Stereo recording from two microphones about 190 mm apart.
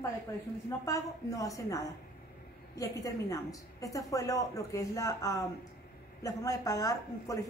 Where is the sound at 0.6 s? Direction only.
15° left (ahead or behind).